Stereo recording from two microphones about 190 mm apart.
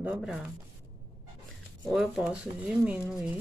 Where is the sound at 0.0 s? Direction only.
5° right (ahead or behind).